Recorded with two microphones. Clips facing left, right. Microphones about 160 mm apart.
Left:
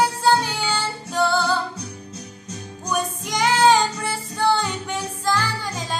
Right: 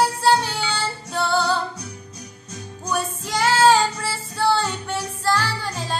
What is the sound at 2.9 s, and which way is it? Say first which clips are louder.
Music: even; 20° left (ahead or behind).